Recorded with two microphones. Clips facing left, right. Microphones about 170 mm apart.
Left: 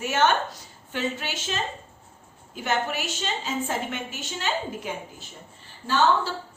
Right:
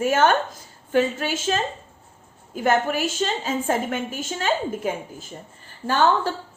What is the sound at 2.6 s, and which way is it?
A woman's voice, 45° right (ahead or behind).